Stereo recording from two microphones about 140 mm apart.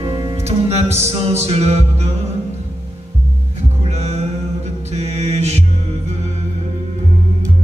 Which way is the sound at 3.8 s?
50° right (ahead or behind).